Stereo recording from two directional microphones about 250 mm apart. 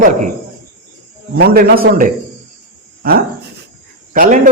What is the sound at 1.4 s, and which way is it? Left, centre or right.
Speech, right.